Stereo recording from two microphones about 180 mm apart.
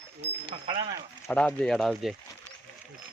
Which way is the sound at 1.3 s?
5° left (ahead or behind).